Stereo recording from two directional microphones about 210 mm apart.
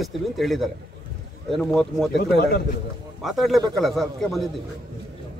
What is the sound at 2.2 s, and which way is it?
Speech, 50° left (ahead or behind).